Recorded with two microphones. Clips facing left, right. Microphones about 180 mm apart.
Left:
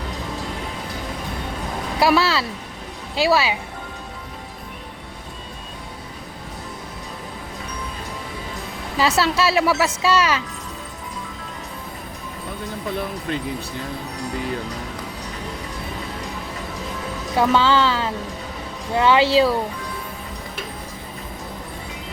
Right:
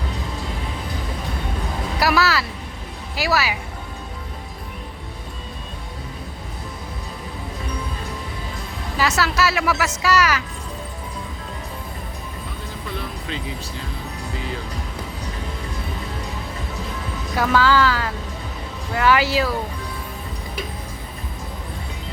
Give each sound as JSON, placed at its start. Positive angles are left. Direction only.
{"t": 2.0, "sound": "speech", "side_deg": 25}
{"t": 9.0, "sound": "speech", "side_deg": 30}
{"t": 17.3, "sound": "speech", "side_deg": 25}